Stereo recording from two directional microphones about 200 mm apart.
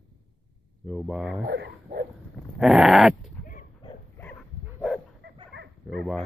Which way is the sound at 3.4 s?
40° left (ahead or behind).